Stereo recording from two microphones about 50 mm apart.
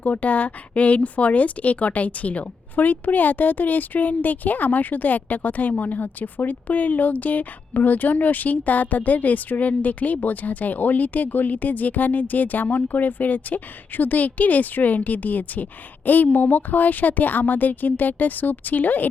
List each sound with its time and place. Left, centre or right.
0.0 s speech: left